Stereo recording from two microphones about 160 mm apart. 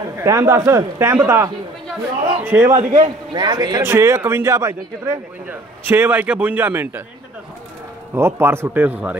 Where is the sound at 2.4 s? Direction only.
15° right (ahead or behind).